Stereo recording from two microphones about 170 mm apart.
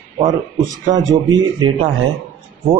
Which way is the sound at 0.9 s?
25° right (ahead or behind).